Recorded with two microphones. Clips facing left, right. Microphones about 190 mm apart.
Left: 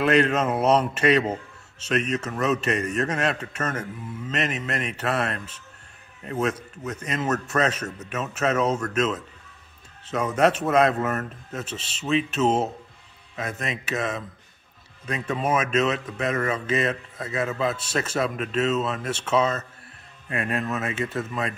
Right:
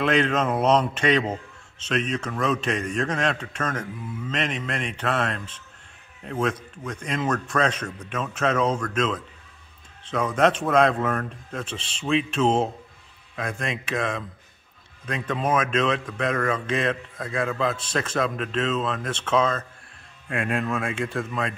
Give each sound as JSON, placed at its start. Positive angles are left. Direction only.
{"t": 0.0, "sound": "a man's voice", "side_deg": 5}